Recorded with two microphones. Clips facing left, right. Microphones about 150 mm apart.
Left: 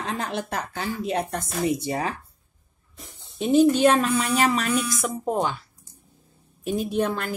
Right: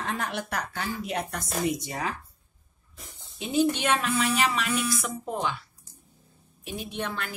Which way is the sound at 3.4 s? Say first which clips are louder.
Left 8 dB; 45° left (ahead or behind).